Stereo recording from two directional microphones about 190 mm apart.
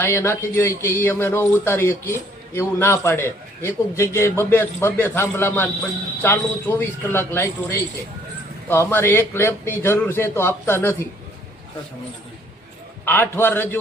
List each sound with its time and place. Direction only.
0.0 s a man's voice: 15° left (ahead or behind)
13.1 s a man's voice: 10° left (ahead or behind)